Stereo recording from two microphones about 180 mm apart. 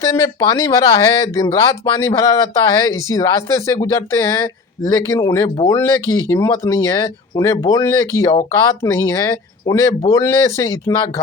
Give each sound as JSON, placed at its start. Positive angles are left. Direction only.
{"t": 0.0, "sound": "speech", "side_deg": 20}